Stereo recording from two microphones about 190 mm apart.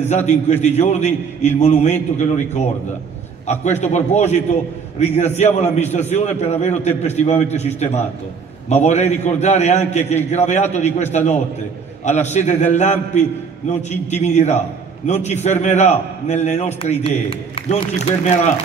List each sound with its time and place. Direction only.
0.0 s a man's voice: 35° left (ahead or behind)